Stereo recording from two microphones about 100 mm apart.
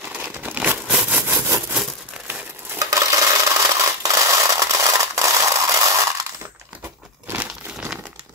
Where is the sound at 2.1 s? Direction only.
15° right (ahead or behind).